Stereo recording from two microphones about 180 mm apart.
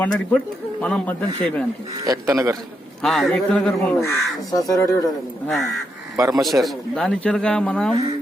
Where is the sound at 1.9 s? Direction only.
20° right (ahead or behind).